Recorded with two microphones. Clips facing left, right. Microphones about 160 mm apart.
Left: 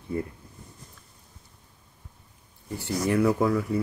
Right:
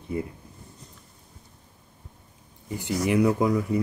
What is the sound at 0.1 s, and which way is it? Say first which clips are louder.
Speech: even; 20° right (ahead or behind).